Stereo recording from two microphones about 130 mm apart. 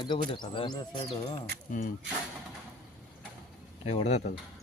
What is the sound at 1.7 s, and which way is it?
Speech, 90° left.